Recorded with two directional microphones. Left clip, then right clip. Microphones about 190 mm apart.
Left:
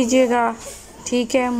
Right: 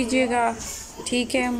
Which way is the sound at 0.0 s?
10° left (ahead or behind).